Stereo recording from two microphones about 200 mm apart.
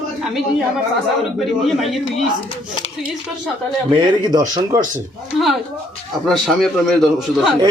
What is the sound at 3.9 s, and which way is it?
Speech, 20° right (ahead or behind).